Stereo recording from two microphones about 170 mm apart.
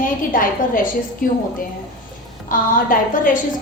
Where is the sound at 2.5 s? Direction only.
55° left (ahead or behind).